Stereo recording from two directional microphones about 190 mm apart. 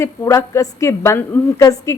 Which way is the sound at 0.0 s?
15° left (ahead or behind).